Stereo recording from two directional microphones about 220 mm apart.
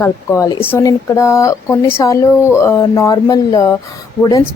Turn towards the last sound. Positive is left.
turn(degrees=15)  # may be behind; listen again after turning